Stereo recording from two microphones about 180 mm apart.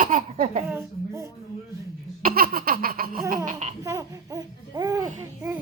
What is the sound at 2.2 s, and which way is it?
Laughter, 55° right (ahead or behind).